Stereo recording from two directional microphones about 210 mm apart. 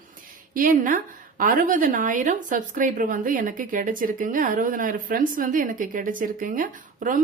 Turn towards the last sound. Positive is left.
turn(degrees=-40)  # may be behind; listen again after turning